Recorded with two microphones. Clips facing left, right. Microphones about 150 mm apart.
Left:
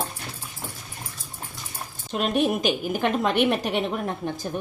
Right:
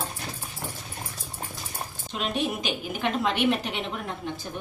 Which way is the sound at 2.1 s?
50° left (ahead or behind).